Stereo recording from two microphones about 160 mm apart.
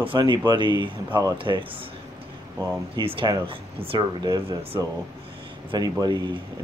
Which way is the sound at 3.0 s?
35° right (ahead or behind).